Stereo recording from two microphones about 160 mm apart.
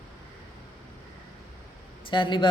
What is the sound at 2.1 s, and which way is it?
Speech, 30° left (ahead or behind).